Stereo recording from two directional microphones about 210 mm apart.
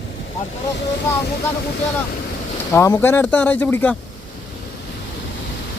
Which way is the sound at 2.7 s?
15° left (ahead or behind).